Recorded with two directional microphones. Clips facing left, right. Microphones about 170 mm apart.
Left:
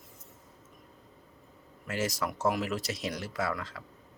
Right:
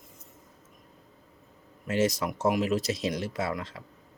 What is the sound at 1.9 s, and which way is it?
Speech, 20° right (ahead or behind).